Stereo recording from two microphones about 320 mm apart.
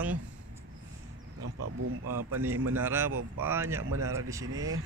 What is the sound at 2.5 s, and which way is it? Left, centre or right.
Speech, right.